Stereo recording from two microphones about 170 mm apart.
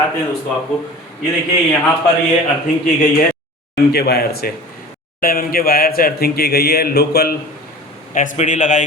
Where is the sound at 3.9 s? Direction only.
70° left (ahead or behind).